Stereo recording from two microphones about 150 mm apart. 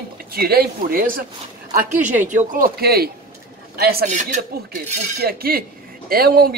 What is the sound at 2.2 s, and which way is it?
Speech, 60° right (ahead or behind).